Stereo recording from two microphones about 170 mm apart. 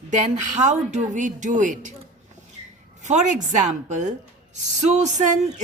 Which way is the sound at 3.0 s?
45° right (ahead or behind).